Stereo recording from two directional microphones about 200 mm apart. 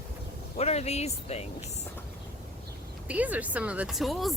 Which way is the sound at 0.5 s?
30° left (ahead or behind).